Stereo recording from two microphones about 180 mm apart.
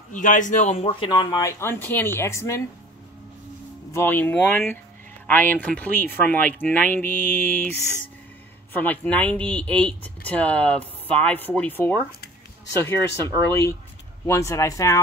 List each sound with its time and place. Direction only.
0.1 s speech: 45° left (ahead or behind); by 2.6 s 15° left (ahead or behind)
3.9 s speech: 10° left (ahead or behind)
8.7 s speech: 10° left (ahead or behind)
13.5 s speech: 15° left (ahead or behind)